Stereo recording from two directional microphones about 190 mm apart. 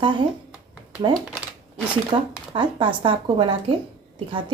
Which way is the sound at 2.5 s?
25° right (ahead or behind).